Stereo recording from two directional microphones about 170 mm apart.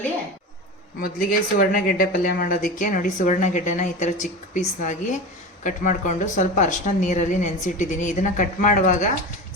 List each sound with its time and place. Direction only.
1.0 s a woman's voice: 55° left (ahead or behind)